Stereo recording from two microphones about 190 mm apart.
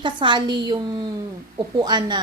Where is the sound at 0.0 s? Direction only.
25° right (ahead or behind).